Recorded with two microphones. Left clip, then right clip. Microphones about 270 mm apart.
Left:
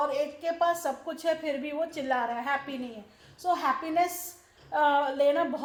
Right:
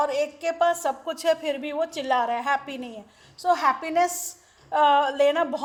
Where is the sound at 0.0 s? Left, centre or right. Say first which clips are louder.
Right 4 dB; right.